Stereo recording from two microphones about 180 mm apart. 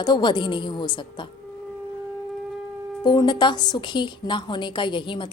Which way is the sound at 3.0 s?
25° left (ahead or behind).